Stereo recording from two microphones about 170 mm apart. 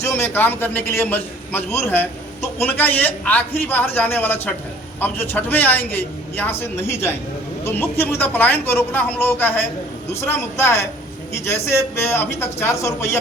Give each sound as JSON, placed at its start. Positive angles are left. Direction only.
{"t": 0.0, "sound": "a man's voice", "side_deg": 15}